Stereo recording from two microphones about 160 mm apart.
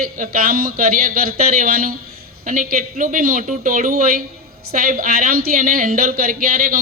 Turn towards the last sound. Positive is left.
turn(degrees=-60)  # may be behind; listen again after turning